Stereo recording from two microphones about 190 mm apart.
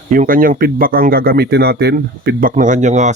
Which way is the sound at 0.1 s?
45° right (ahead or behind).